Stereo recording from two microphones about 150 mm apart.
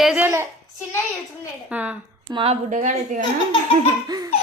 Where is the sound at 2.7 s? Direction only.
60° right (ahead or behind).